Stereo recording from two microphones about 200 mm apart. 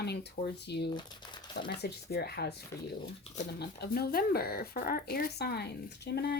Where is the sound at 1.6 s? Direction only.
50° left (ahead or behind).